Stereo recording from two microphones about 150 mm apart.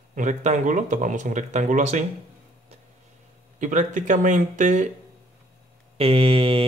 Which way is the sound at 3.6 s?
55° right (ahead or behind).